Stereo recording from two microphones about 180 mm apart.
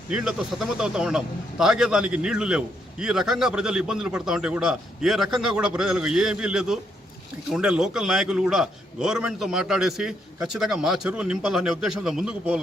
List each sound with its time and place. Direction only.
0.1 s a man's voice: 5° right (ahead or behind)